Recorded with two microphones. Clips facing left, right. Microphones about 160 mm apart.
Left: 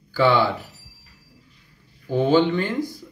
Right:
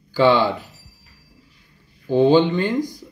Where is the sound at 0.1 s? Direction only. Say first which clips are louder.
Right 3 dB; 15° right (ahead or behind).